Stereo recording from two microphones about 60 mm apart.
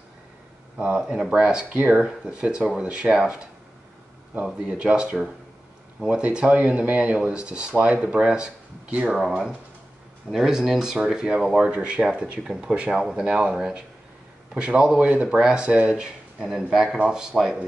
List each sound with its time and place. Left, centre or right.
0.7 s a man's voice: centre
2.0 s speech: centre
4.6 s speech: centre
10.3 s a man's voice: centre
12.7 s a man's voice: centre